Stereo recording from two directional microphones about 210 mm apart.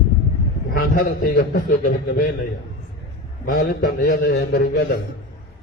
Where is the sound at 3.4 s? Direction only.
45° left (ahead or behind).